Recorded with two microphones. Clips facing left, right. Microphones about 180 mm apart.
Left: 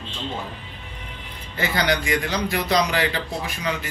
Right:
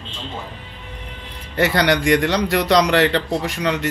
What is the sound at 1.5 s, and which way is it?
A man's voice, 75° right (ahead or behind).